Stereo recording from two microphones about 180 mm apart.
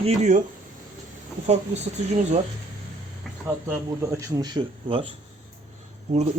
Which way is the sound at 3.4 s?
15° right (ahead or behind).